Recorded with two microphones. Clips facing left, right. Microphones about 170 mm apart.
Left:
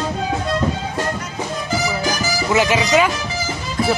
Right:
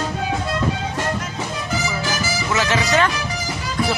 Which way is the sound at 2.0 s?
15° left (ahead or behind).